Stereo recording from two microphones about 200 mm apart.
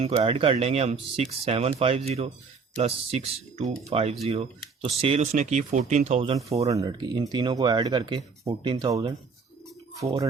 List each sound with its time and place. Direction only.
0.0 s speech: 30° right (ahead or behind)
6.7 s speech: 20° right (ahead or behind)